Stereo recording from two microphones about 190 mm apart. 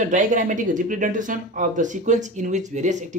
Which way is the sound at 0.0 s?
40° right (ahead or behind).